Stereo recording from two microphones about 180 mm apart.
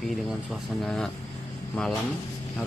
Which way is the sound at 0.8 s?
5° left (ahead or behind).